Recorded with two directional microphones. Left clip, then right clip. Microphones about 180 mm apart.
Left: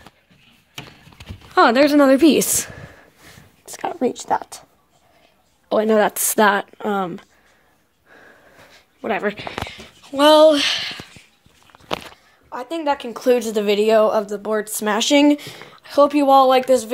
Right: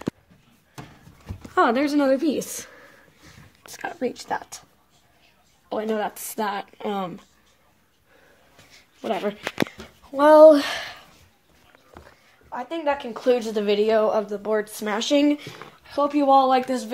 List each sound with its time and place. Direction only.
1.5 s speech: 25° left (ahead or behind)
2.1 s a sound: 50° left (ahead or behind)
3.6 s speech: 30° left (ahead or behind)
5.7 s a woman's voice: 55° left (ahead or behind)
6.5 s speech: 30° left (ahead or behind)
9.0 s speech: 25° left (ahead or behind)
10.0 s speech: 5° left (ahead or behind)
10.6 s speech: 25° right (ahead or behind)
12.4 s a woman's voice: 40° left (ahead or behind)